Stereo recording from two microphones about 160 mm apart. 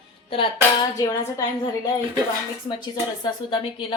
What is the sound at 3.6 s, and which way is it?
Music, 35° left (ahead or behind).